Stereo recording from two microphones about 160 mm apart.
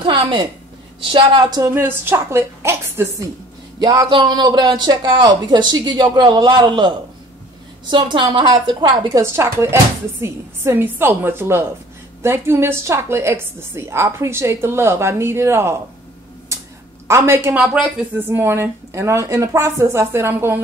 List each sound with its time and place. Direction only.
0.0 s a sound: 30° right (ahead or behind)
1.1 s a woman's voice: 30° right (ahead or behind)
17.1 s a woman's voice: 15° right (ahead or behind)